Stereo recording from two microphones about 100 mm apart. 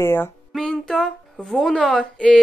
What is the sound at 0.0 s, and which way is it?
Speech, 25° left (ahead or behind).